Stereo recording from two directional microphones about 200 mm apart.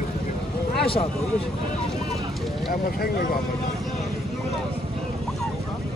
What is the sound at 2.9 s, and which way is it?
Speech, 50° left (ahead or behind).